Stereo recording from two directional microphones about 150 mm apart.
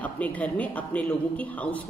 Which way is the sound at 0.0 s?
10° left (ahead or behind).